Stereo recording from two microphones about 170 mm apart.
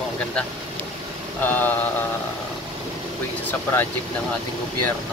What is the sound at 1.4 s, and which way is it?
Mantra, 10° left (ahead or behind).